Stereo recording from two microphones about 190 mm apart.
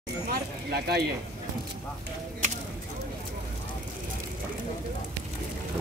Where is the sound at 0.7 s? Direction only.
55° right (ahead or behind).